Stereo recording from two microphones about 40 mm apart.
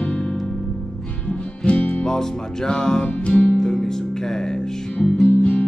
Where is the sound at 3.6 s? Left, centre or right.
Centre.